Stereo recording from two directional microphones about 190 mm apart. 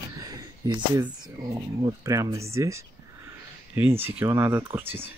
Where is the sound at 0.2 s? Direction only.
20° right (ahead or behind).